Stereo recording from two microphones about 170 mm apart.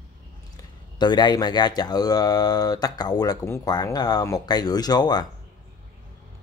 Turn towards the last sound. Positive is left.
turn(degrees=25)  # may be behind; listen again after turning